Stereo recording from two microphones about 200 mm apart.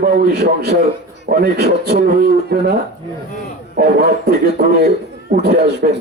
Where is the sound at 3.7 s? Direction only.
50° right (ahead or behind).